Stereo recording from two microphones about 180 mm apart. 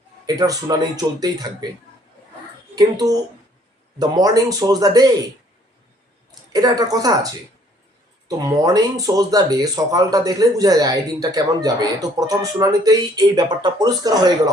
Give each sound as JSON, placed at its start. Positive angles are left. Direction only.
{"t": 0.3, "sound": "speech", "side_deg": -20}
{"t": 2.7, "sound": "speech", "side_deg": -20}
{"t": 6.5, "sound": "speech", "side_deg": -20}